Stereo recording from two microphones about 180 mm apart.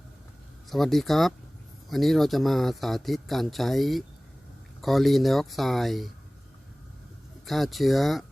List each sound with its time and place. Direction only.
0.7 s speech: centre (ahead or behind)
7.4 s speech: centre (ahead or behind)